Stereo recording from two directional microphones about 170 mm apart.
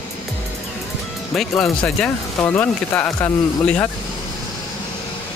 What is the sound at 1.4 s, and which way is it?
Speech, centre (ahead or behind).